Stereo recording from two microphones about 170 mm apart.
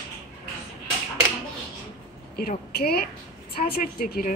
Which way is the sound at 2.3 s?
65° left (ahead or behind).